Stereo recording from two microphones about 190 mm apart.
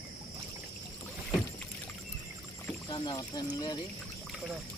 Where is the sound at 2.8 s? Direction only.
20° left (ahead or behind).